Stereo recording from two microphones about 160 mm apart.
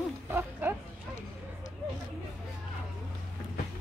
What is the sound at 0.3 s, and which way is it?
Music, 10° right (ahead or behind).